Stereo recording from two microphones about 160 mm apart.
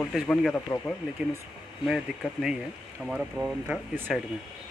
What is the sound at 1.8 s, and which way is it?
Speech, 5° right (ahead or behind).